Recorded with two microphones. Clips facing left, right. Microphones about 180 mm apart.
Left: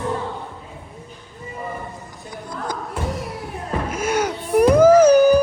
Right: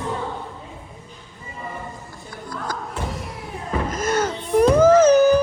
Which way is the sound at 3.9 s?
10° left (ahead or behind).